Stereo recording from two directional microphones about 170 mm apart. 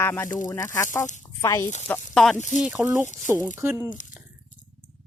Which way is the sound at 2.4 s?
45° left (ahead or behind).